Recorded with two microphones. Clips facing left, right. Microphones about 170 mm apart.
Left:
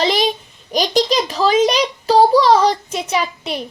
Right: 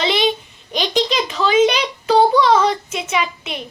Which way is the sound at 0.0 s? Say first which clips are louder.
Left 2 dB; 40° left (ahead or behind).